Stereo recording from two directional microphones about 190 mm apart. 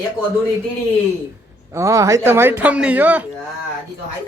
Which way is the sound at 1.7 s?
15° right (ahead or behind).